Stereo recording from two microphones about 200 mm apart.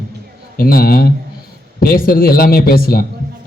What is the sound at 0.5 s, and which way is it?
A man's voice, 50° left (ahead or behind).